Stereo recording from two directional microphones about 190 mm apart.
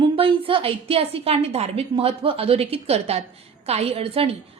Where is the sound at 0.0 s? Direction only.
30° right (ahead or behind).